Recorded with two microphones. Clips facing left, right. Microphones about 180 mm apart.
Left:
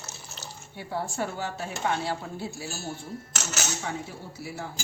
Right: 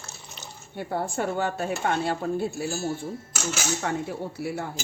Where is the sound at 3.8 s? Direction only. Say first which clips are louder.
Right 6 dB; 60° right (ahead or behind).